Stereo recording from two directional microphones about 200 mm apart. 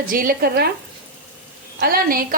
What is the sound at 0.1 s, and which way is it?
Speech, 45° right (ahead or behind).